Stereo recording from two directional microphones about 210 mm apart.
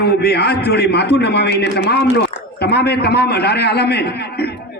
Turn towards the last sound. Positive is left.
turn(degrees=50)  # may be behind; listen again after turning